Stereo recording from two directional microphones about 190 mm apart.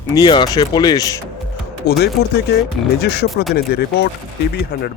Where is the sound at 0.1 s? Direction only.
20° left (ahead or behind).